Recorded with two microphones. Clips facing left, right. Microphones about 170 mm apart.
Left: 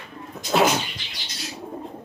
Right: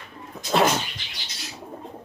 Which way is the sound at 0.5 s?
Centre (ahead or behind).